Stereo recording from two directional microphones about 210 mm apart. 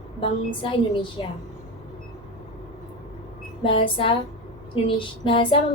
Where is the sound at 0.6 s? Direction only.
25° left (ahead or behind).